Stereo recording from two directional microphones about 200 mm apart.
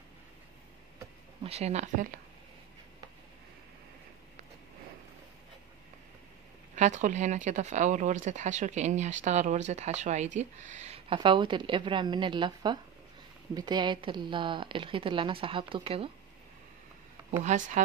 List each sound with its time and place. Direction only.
1.4 s speech: 30° right (ahead or behind)
6.7 s a woman's voice: 35° right (ahead or behind)
17.4 s speech: 35° right (ahead or behind)